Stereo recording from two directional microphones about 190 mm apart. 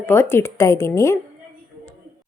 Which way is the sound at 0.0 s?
15° left (ahead or behind).